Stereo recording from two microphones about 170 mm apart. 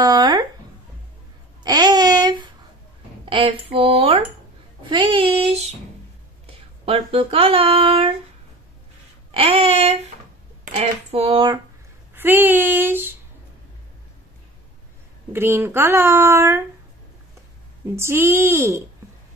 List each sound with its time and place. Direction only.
0.0 s a sound: 25° right (ahead or behind)
1.6 s babbling: 25° right (ahead or behind)
3.3 s speech: 30° right (ahead or behind)
4.8 s child singing: 30° right (ahead or behind)
6.4 s speech: 35° right (ahead or behind)
9.3 s speech: 35° right (ahead or behind)
12.2 s speech: 10° right (ahead or behind)
15.3 s speech: 15° right (ahead or behind)
17.9 s speech: 15° right (ahead or behind)